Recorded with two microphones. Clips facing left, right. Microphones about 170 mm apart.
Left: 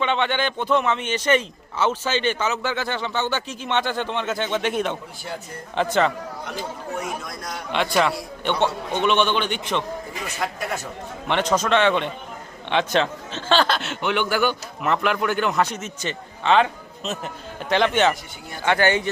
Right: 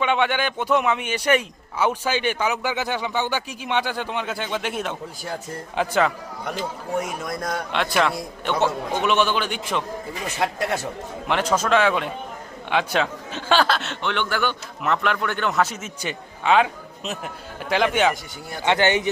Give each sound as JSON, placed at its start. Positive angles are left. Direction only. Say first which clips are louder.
{"t": 0.0, "sound": "a man's voice", "louder": "right 1 dB", "side_deg": -10}
{"t": 7.3, "sound": "a man's voice", "louder": "right 6 dB", "side_deg": -55}
{"t": 7.7, "sound": "a man's voice", "louder": "left 2 dB", "side_deg": 0}
{"t": 11.3, "sound": "a man's voice", "louder": "even", "side_deg": -5}
{"t": 18.6, "sound": "speech", "louder": "even", "side_deg": -20}